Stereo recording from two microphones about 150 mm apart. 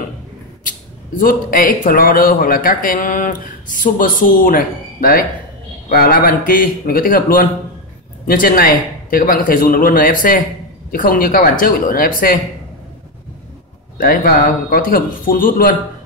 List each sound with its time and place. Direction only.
0.7 s speech: 70° left (ahead or behind)
13.9 s speech: 75° left (ahead or behind)